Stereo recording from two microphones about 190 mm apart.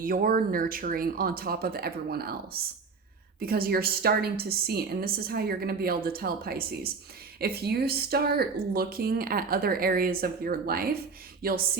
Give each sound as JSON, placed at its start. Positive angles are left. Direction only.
{"t": 0.0, "sound": "speech", "side_deg": -50}